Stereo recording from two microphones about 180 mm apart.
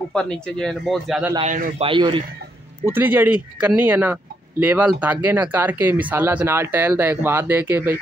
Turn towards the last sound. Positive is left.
turn(degrees=-10)  # may be behind; listen again after turning